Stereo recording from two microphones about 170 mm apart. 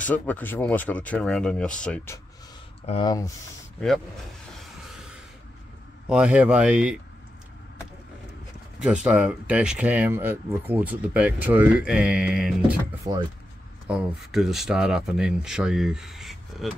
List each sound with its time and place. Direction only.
0.0 s speech: 10° left (ahead or behind)
2.9 s speech: 25° left (ahead or behind)
6.0 s speech: 5° right (ahead or behind)
8.7 s speech: 5° right (ahead or behind)
13.8 s speech: centre (ahead or behind)